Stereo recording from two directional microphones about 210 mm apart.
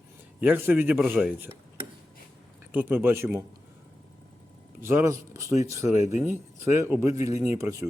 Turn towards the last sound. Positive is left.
turn(degrees=-15)  # may be behind; listen again after turning